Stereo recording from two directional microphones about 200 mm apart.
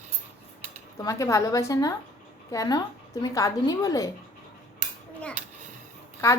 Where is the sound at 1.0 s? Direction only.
15° left (ahead or behind).